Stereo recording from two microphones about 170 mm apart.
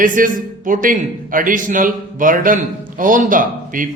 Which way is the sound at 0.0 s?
50° right (ahead or behind).